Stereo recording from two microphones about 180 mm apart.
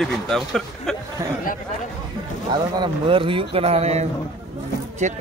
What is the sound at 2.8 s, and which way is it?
Speech, 30° right (ahead or behind).